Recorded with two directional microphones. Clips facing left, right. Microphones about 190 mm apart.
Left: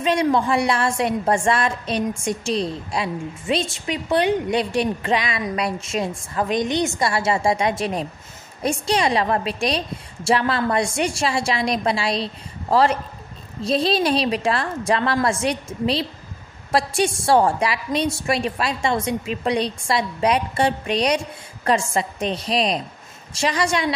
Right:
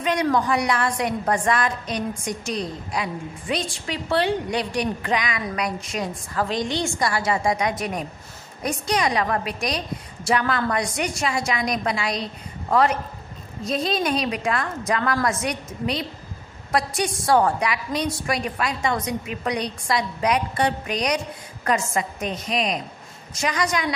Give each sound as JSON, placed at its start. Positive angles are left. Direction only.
{"t": 0.0, "sound": "a woman's voice", "side_deg": 25}